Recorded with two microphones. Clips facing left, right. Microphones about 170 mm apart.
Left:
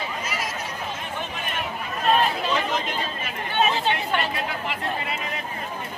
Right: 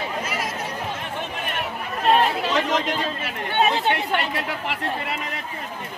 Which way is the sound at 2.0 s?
75° right (ahead or behind).